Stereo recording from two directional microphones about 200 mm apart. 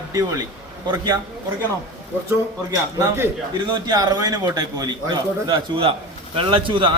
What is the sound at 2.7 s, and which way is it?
A man's voice, 15° right (ahead or behind).